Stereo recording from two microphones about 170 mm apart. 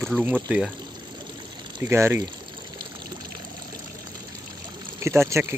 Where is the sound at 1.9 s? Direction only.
15° right (ahead or behind).